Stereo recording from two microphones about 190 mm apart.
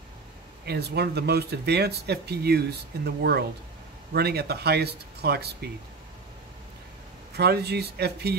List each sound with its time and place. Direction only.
0.7 s speech: 60° right (ahead or behind)
7.3 s speech: 60° right (ahead or behind)